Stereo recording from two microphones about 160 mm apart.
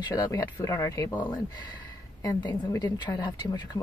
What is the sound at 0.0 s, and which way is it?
Speech, 20° left (ahead or behind).